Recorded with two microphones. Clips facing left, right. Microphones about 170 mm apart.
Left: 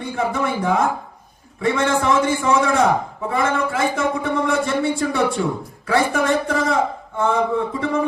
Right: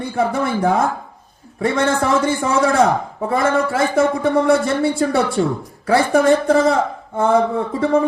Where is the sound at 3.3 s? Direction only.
40° right (ahead or behind).